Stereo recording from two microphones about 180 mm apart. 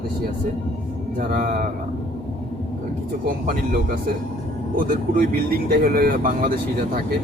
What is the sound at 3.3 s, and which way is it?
Speech, 50° right (ahead or behind).